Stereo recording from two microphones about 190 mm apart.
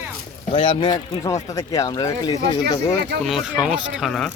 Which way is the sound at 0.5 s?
25° left (ahead or behind).